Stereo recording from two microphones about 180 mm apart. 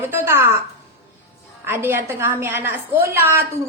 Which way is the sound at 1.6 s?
15° right (ahead or behind).